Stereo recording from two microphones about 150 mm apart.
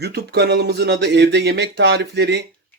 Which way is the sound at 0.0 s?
90° right.